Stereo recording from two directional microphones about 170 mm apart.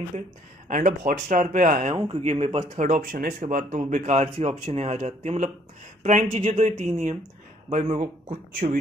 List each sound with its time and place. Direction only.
0.7 s speech: 50° right (ahead or behind)
2.0 s speech: 35° right (ahead or behind)